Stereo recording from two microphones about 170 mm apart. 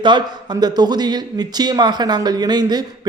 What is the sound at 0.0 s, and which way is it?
A man's voice, 25° right (ahead or behind).